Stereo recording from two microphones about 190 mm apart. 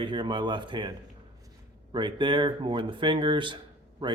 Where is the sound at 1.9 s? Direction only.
25° right (ahead or behind).